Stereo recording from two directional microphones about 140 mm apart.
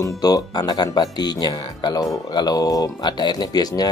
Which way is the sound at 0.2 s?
25° left (ahead or behind).